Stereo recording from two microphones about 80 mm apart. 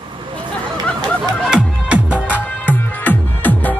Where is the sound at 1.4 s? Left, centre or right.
Centre.